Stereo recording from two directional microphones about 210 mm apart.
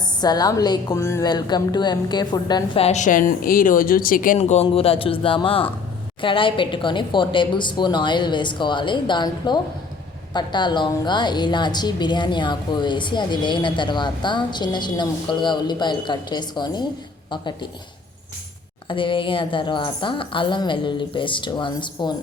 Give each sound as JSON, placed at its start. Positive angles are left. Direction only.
{"t": 0.2, "sound": "a woman's voice", "side_deg": 20}
{"t": 18.9, "sound": "a woman's voice", "side_deg": 25}